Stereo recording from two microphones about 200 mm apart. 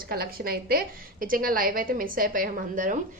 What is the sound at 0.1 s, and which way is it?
A woman's voice, 50° right (ahead or behind).